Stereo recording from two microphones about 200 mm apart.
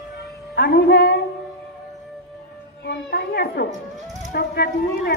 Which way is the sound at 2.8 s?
55° left (ahead or behind).